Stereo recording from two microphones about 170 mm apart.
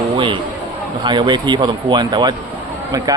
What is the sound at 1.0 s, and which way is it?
Speech, 25° right (ahead or behind).